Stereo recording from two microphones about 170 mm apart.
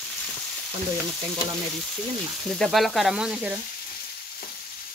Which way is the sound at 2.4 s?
Centre (ahead or behind).